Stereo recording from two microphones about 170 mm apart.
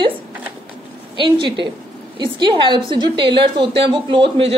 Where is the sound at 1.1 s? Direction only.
30° right (ahead or behind).